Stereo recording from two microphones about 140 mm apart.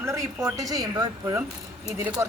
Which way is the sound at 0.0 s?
20° right (ahead or behind).